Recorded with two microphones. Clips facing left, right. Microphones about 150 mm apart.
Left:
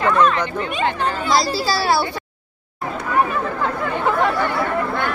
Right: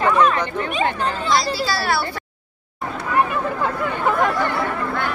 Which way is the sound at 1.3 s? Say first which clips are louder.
Left 2 dB; 35° left (ahead or behind).